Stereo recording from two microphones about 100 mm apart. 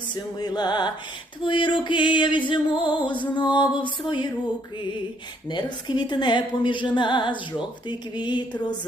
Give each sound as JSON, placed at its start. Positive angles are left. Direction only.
{"t": 0.1, "sound": "a woman's voice", "side_deg": 45}
{"t": 5.5, "sound": "a woman's voice", "side_deg": 50}